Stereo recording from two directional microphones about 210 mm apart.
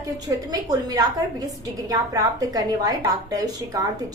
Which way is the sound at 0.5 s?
15° right (ahead or behind).